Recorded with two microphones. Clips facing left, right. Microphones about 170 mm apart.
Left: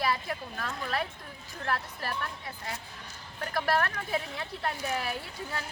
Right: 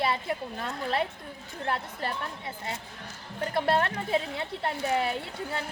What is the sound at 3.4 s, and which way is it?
A woman's voice, 25° right (ahead or behind).